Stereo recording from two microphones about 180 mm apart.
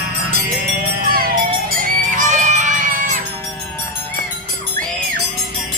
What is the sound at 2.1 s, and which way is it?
Music, 45° right (ahead or behind).